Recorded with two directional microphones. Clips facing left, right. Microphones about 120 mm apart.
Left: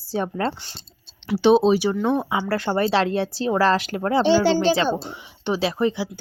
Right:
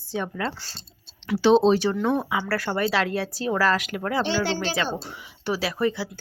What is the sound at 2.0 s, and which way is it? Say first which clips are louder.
Speech: left 2 dB; 20° left (ahead or behind).